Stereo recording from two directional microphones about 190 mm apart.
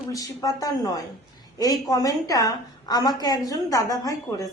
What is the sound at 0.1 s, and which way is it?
A woman's voice, 20° left (ahead or behind).